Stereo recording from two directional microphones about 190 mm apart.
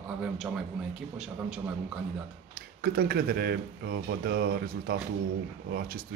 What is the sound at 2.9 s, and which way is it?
Speech, 55° right (ahead or behind).